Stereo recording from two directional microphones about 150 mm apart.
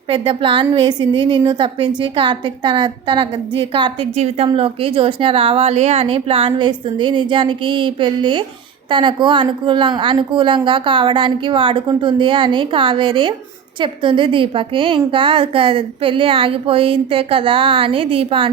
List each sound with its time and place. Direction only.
0.1 s a woman's voice: 35° right (ahead or behind)